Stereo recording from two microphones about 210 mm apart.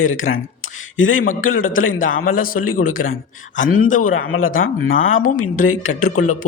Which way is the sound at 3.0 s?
90° left.